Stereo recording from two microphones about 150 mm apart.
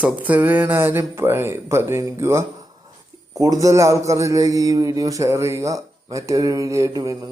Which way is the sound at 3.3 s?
25° right (ahead or behind).